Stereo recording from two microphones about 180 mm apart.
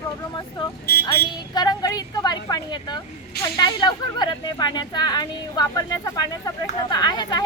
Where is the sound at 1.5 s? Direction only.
20° left (ahead or behind).